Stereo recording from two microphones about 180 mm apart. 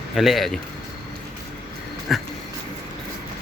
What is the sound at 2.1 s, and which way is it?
Speech, centre (ahead or behind).